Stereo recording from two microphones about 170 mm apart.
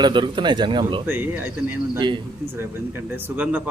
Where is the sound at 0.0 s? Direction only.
30° right (ahead or behind).